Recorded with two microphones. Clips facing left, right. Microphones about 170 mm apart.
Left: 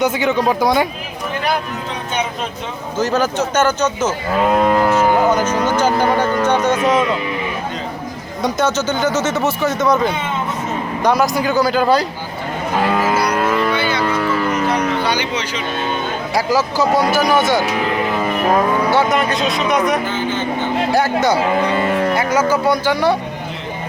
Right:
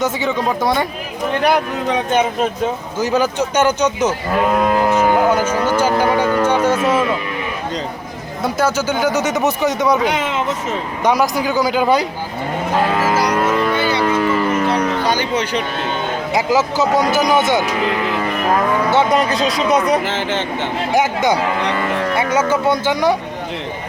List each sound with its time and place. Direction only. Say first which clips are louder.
0.0 s speech: left 2 dB; centre (ahead or behind)
3.0 s speech: even; 15° right (ahead or behind)
8.4 s speech: even; 10° right (ahead or behind)
10.0 s speech: right 1 dB; 90° right
11.1 s speech: left 1 dB; 10° right (ahead or behind)
13.7 s a sound: right 1 dB; 40° right (ahead or behind)
15.0 s music: right 2 dB; 45° right (ahead or behind)
16.3 s speech: right 1 dB; 20° right (ahead or behind)
18.9 s speech: right 1 dB; 20° right (ahead or behind)
20.1 s speech: even; 85° right
20.9 s speech: right 1 dB; 15° right (ahead or behind)